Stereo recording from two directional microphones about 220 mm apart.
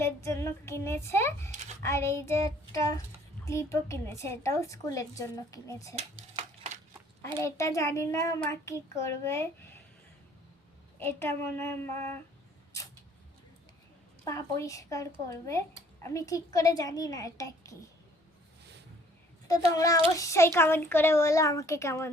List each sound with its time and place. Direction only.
0.0 s a woman's voice: 10° left (ahead or behind)
6.0 s a sound: 30° right (ahead or behind)
7.4 s a woman's voice: 15° left (ahead or behind)
11.0 s a woman's voice: 10° left (ahead or behind)
14.3 s a woman's voice: 15° left (ahead or behind)
19.5 s a woman's voice: 15° left (ahead or behind)